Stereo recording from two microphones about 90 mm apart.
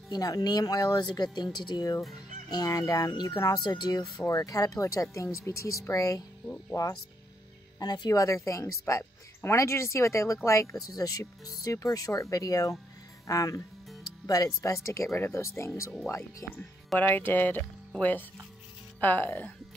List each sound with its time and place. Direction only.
0.1 s speech: 45° left (ahead or behind)
4.2 s speech: 40° left (ahead or behind)
7.8 s speech: 50° left (ahead or behind); by 15.7 s 30° left (ahead or behind)
16.4 s speech: 10° left (ahead or behind)
17.0 s speech: 20° left (ahead or behind)
18.9 s speech: 20° left (ahead or behind)